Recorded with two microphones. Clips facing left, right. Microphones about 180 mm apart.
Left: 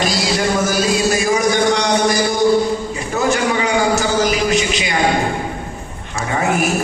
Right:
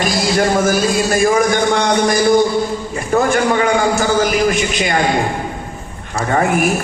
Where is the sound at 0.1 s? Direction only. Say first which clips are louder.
Right 3 dB; 50° right (ahead or behind).